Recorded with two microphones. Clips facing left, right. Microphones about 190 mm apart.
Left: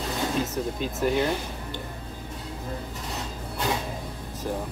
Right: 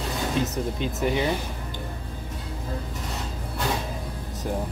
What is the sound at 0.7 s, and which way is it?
Speech, centre (ahead or behind).